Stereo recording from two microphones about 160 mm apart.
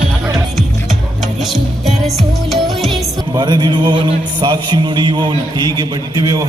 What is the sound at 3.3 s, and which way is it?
A man's voice, 25° right (ahead or behind).